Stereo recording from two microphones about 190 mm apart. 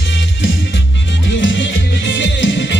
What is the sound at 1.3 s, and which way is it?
Music, 75° left (ahead or behind).